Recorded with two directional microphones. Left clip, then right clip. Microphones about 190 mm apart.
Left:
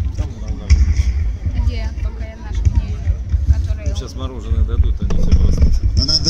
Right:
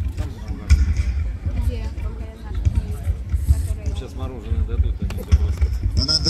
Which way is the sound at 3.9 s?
45° left (ahead or behind).